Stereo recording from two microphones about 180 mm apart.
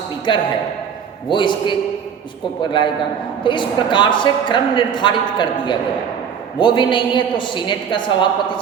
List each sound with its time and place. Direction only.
0.3 s a woman's voice: 25° left (ahead or behind)